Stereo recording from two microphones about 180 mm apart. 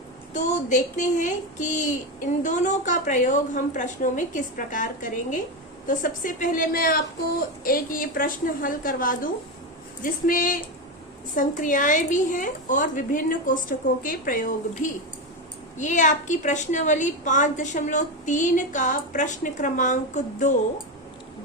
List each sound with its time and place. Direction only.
0.3 s a woman's voice: 45° left (ahead or behind)